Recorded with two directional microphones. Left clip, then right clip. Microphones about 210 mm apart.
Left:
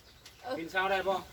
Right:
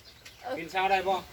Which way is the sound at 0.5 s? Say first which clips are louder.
Right 4 dB; 5° left (ahead or behind).